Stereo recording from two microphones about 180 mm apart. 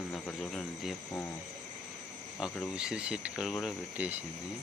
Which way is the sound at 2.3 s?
5° right (ahead or behind).